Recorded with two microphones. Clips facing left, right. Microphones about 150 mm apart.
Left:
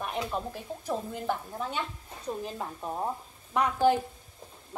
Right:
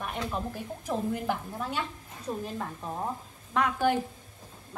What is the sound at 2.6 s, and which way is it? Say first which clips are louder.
Speech: left 1 dB; 10° left (ahead or behind).